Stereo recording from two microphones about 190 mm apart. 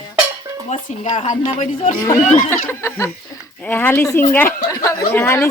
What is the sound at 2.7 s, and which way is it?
Speech, 15° left (ahead or behind).